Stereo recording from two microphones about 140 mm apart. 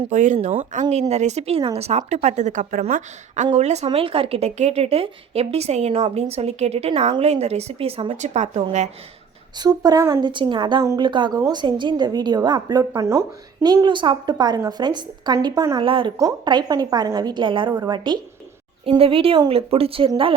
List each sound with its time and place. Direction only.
0.1 s a woman's voice: 65° right (ahead or behind)
3.8 s a woman's voice: 40° right (ahead or behind)
9.6 s a woman's voice: 30° right (ahead or behind)
16.1 s a woman's voice: 25° right (ahead or behind); by 20.1 s 40° right (ahead or behind)